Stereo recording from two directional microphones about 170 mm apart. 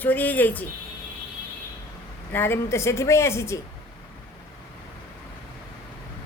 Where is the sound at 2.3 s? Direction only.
15° left (ahead or behind).